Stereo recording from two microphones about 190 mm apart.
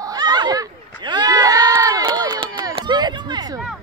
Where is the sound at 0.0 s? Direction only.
20° right (ahead or behind).